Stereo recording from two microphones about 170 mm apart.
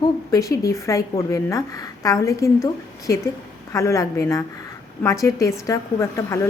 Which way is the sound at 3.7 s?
15° left (ahead or behind).